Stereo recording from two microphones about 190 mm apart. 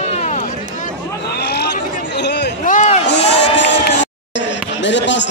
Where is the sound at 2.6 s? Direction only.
40° left (ahead or behind).